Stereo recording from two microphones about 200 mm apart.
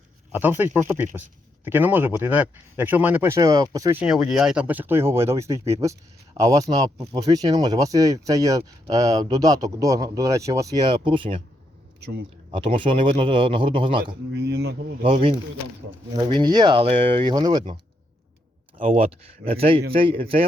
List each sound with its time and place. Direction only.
0.3 s speech: 10° right (ahead or behind)
4.0 s speech: 5° right (ahead or behind); by 11.4 s 25° right (ahead or behind)
11.9 s a man's voice: 55° right (ahead or behind)
12.5 s a man's voice: 25° right (ahead or behind)
14.4 s speech: 55° right (ahead or behind)
15.0 s a man's voice: 25° right (ahead or behind)
18.8 s a man's voice: 30° right (ahead or behind)